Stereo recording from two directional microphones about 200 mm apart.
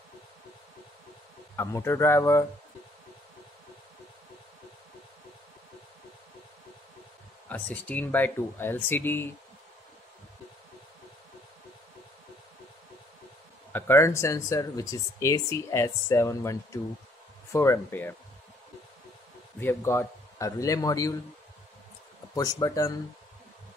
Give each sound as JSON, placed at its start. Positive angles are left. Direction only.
{"t": 1.6, "sound": "speech", "side_deg": 10}
{"t": 7.4, "sound": "speech", "side_deg": 5}
{"t": 13.7, "sound": "speech", "side_deg": 10}
{"t": 19.6, "sound": "speech", "side_deg": 10}
{"t": 22.3, "sound": "speech", "side_deg": 20}